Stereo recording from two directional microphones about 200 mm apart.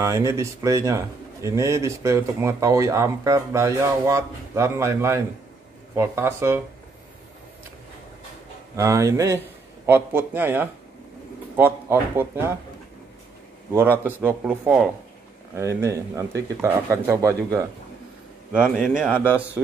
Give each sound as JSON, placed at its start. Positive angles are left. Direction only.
{"t": 0.0, "sound": "a man's voice", "side_deg": -15}
{"t": 8.7, "sound": "a man's voice", "side_deg": -15}
{"t": 13.7, "sound": "a man's voice", "side_deg": -10}
{"t": 18.5, "sound": "a man's voice", "side_deg": -5}